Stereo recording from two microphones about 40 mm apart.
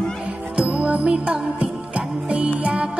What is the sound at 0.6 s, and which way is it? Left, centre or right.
Music, right.